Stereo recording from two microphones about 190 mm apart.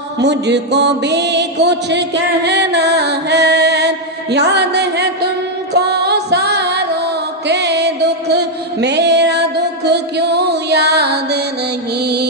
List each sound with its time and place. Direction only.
0.2 s music: 65° right (ahead or behind)
7.4 s mantra: 65° right (ahead or behind)
12.0 s music: 55° right (ahead or behind)